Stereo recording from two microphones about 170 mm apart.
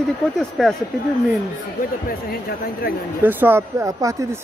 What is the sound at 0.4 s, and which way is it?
Speech, centre (ahead or behind).